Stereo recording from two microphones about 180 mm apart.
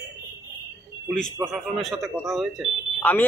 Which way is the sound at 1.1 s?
Centre (ahead or behind).